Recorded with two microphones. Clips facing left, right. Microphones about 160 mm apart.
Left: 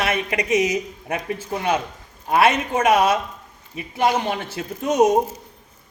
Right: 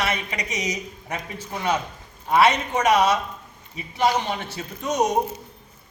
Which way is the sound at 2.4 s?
50° left (ahead or behind).